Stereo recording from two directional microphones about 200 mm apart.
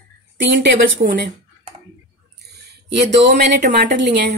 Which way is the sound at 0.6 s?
60° right (ahead or behind).